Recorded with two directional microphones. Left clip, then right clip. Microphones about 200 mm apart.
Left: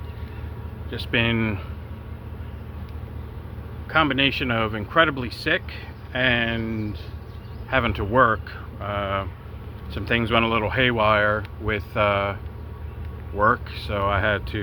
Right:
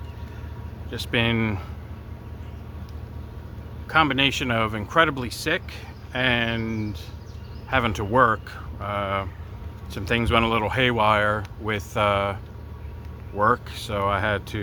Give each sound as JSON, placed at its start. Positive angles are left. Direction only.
{"t": 0.9, "sound": "speech", "side_deg": -20}
{"t": 3.8, "sound": "speech", "side_deg": -20}